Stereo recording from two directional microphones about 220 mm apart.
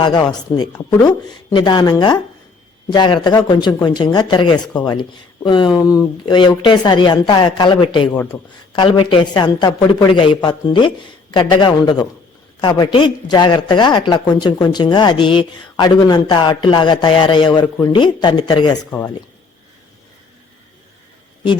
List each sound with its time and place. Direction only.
0.0 s speech: 20° left (ahead or behind)